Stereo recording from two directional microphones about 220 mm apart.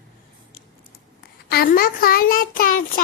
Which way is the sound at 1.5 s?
45° left (ahead or behind).